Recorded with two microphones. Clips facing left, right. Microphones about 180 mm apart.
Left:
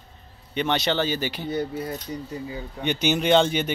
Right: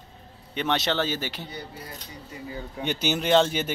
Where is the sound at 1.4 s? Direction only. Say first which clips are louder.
Left 12 dB; 55° left (ahead or behind).